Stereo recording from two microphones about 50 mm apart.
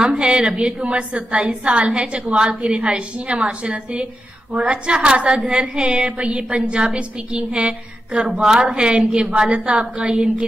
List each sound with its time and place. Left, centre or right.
0.0 s a woman's voice: right